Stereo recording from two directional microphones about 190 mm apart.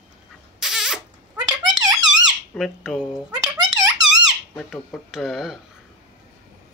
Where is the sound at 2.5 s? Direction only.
Centre (ahead or behind).